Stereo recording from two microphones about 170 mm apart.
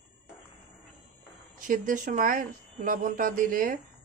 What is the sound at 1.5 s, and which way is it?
Speech, 55° right (ahead or behind).